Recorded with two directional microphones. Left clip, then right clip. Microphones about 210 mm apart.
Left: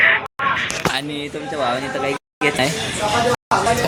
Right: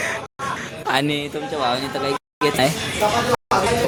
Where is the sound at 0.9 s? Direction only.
55° right (ahead or behind).